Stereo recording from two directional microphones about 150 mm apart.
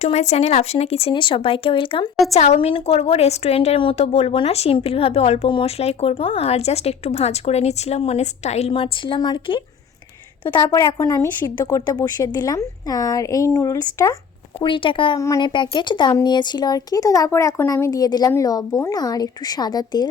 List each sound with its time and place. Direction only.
0.0 s speech: 45° left (ahead or behind)
2.3 s a woman's voice: 50° left (ahead or behind); by 14.2 s 20° left (ahead or behind)
14.6 s speech: 35° left (ahead or behind)